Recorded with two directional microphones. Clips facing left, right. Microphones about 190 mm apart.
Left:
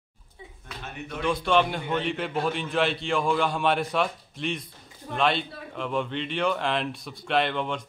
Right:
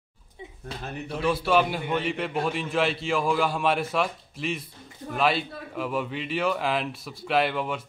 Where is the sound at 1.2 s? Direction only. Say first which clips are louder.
Even; 5° right (ahead or behind).